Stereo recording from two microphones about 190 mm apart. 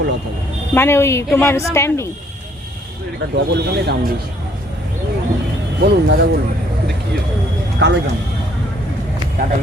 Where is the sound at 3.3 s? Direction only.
60° right (ahead or behind).